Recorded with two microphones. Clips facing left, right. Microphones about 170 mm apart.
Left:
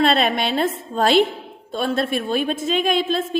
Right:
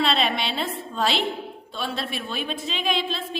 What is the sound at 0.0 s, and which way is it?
A man's voice, 50° left (ahead or behind).